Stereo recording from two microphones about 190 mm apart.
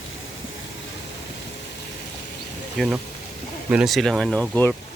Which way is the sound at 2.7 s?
Centre (ahead or behind).